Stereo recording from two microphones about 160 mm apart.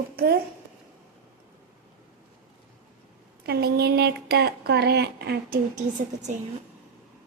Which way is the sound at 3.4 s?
85° right.